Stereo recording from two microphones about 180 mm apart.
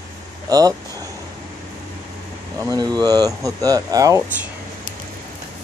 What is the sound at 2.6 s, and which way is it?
Speech, 20° right (ahead or behind).